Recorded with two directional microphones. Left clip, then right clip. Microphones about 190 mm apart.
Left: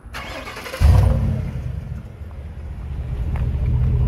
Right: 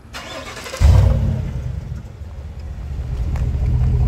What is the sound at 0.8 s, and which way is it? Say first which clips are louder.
Vehicle: right 1 dB; 5° right (ahead or behind).